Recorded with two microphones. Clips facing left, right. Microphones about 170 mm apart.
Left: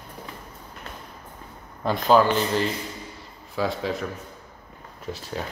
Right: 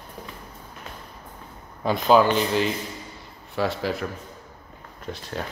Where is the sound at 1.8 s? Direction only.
5° right (ahead or behind).